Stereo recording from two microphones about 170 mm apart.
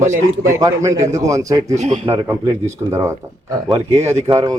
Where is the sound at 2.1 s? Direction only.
15° right (ahead or behind).